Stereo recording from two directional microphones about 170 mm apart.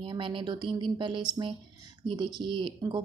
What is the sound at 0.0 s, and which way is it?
A woman's voice, 30° right (ahead or behind).